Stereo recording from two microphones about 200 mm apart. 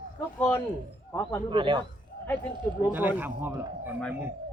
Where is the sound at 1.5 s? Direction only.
25° right (ahead or behind).